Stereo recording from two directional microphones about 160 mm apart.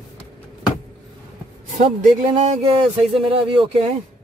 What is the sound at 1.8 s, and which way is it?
Speech, 40° right (ahead or behind).